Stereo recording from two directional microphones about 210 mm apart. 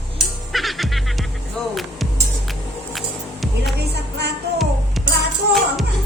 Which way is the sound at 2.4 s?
Centre (ahead or behind).